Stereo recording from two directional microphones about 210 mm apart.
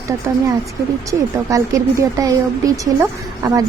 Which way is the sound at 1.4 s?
15° right (ahead or behind).